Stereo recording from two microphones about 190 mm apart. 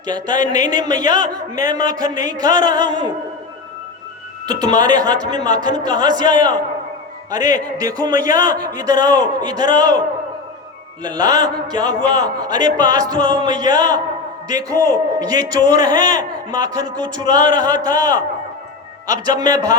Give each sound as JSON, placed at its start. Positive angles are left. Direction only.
{"t": 0.1, "sound": "a man's voice", "side_deg": -20}
{"t": 4.8, "sound": "a man's voice", "side_deg": -20}
{"t": 11.0, "sound": "a man's voice", "side_deg": -20}